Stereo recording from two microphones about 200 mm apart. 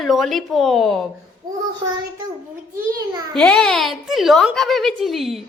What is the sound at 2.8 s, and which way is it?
Speech, 15° right (ahead or behind).